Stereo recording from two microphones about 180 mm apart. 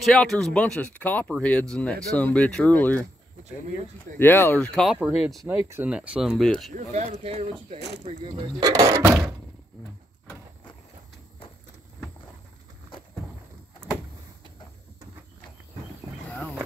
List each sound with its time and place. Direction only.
0.0 s speech: centre (ahead or behind)
4.2 s speech: 10° left (ahead or behind)
5.7 s speech: 10° right (ahead or behind)
6.7 s speech: 40° right (ahead or behind); by 9.2 s 20° right (ahead or behind)
16.3 s wild animals: 5° left (ahead or behind)